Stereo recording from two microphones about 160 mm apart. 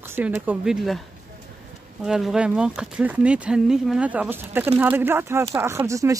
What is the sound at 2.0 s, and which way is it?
Speech, 5° right (ahead or behind).